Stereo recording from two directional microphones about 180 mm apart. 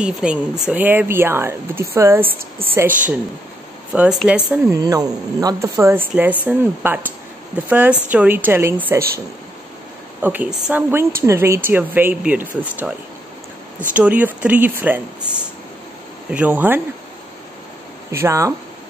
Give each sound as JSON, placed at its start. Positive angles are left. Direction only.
{"t": 0.0, "sound": "speech", "side_deg": -5}
{"t": 3.9, "sound": "speech", "side_deg": -5}
{"t": 4.6, "sound": "speech", "side_deg": -20}
{"t": 10.2, "sound": "speech", "side_deg": -10}
{"t": 16.3, "sound": "speech", "side_deg": -10}
{"t": 18.1, "sound": "speech", "side_deg": -15}